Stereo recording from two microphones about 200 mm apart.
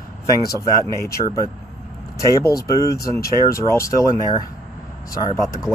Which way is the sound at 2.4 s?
15° left (ahead or behind).